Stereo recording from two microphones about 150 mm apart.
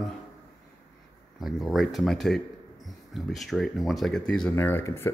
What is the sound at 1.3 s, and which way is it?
Speech, centre (ahead or behind).